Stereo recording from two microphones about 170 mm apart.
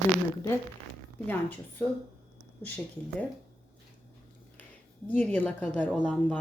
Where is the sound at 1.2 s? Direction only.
10° left (ahead or behind).